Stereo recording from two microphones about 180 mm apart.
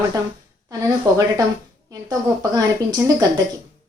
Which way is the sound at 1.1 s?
20° right (ahead or behind).